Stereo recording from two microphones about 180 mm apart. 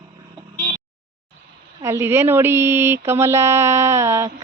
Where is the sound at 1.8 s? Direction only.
15° right (ahead or behind).